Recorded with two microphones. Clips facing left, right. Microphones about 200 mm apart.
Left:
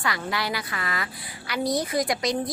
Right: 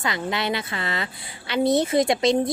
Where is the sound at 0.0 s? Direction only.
20° right (ahead or behind).